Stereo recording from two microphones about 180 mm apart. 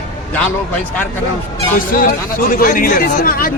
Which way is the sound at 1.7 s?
50° left (ahead or behind).